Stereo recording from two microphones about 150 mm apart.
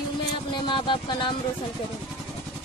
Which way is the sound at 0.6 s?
35° left (ahead or behind).